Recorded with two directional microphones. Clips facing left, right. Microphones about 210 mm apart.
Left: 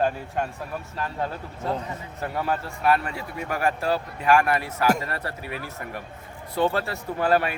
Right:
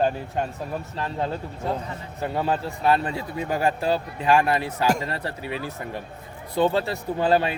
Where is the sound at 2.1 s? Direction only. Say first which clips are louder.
Right 3 dB; 25° right (ahead or behind).